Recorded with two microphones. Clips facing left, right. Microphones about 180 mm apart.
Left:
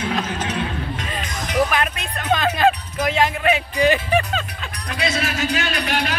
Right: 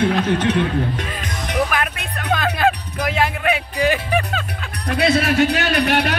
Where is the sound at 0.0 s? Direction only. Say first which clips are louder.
Right 7 dB; 60° right (ahead or behind).